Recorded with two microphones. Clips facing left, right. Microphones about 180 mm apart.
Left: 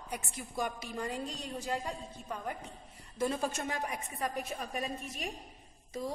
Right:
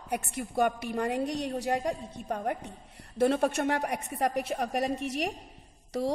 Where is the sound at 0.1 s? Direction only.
60° right (ahead or behind).